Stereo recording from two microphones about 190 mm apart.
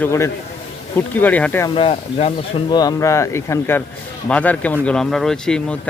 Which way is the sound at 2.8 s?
15° left (ahead or behind).